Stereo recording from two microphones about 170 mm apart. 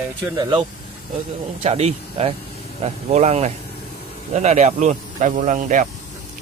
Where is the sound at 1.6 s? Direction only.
40° right (ahead or behind).